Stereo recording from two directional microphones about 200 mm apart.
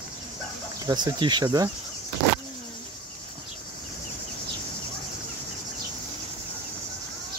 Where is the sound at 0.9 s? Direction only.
20° right (ahead or behind).